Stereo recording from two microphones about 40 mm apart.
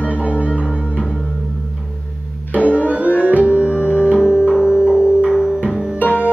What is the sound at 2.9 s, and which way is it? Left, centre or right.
Music, right.